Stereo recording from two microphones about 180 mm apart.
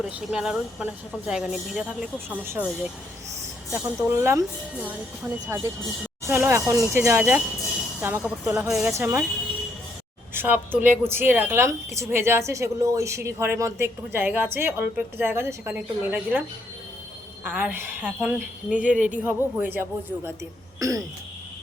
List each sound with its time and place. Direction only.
0.0 s speech: 5° right (ahead or behind)
10.3 s speech: 10° right (ahead or behind)
17.4 s speech: 10° right (ahead or behind)
18.9 s speech: 45° right (ahead or behind)
19.2 s speech: 10° right (ahead or behind)